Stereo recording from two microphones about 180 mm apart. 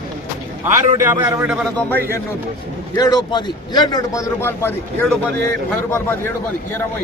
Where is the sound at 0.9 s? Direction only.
15° right (ahead or behind).